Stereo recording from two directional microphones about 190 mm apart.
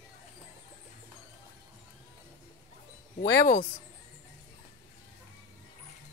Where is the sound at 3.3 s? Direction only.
55° left (ahead or behind).